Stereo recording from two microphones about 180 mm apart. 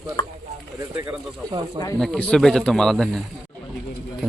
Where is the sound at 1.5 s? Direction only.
25° right (ahead or behind).